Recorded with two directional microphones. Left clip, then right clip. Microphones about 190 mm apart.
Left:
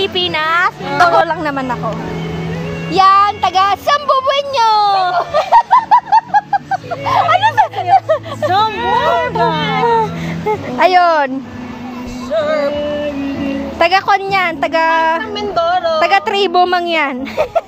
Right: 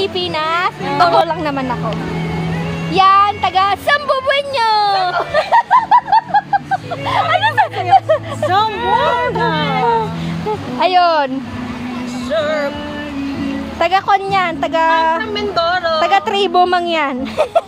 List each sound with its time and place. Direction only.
0.0 s a sound: 10° left (ahead or behind)
0.9 s a woman's voice: 25° left (ahead or behind)
2.9 s speech: 40° left (ahead or behind)
3.8 s speech: 20° left (ahead or behind)
5.3 s a sound: 30° left (ahead or behind)
7.1 s a sound: 20° left (ahead or behind)
7.9 s speech: 35° left (ahead or behind)
8.5 s speech: 10° right (ahead or behind)
8.8 s a woman's voice: 25° left (ahead or behind)
12.3 s speech: 5° left (ahead or behind)
13.7 s a woman's voice: 30° left (ahead or behind)
15.5 s speech: 10° left (ahead or behind)
16.0 s a woman's voice: 25° left (ahead or behind)